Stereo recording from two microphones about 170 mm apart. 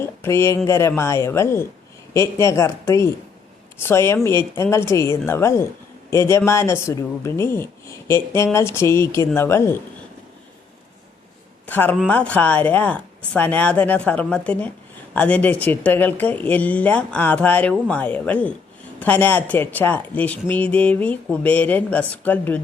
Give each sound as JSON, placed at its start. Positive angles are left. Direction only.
{"t": 0.0, "sound": "a sound", "side_deg": 15}
{"t": 0.7, "sound": "speech", "side_deg": 15}
{"t": 11.6, "sound": "speech", "side_deg": 10}